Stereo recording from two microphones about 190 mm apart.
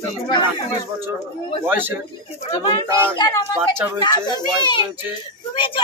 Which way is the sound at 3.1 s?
25° left (ahead or behind).